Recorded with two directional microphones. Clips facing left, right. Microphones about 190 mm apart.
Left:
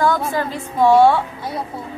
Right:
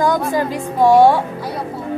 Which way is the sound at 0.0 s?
15° right (ahead or behind).